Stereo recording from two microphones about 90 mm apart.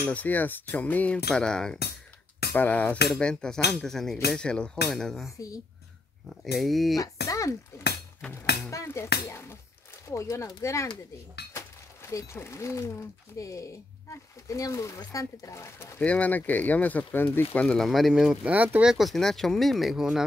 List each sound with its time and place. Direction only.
0.0 s speech: 15° left (ahead or behind)
2.5 s speech: 20° left (ahead or behind); by 7.0 s centre (ahead or behind)
7.0 s speech: 40° left (ahead or behind)
12.1 s speech: 35° left (ahead or behind)
16.0 s speech: 15° left (ahead or behind)
17.6 s speech: 5° left (ahead or behind)
18.5 s speech: 15° right (ahead or behind)